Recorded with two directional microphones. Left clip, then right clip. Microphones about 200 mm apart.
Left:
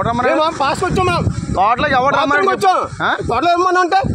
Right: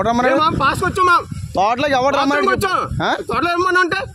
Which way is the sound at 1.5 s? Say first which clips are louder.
Left 2 dB; 40° right (ahead or behind).